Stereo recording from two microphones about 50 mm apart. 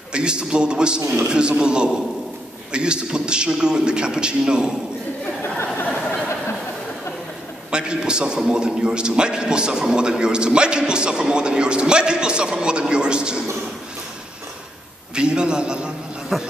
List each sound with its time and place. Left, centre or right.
0.1 s a man's voice: centre
5.4 s a sound: left
7.7 s a man's voice: centre
15.1 s a man's voice: centre
16.3 s speech: centre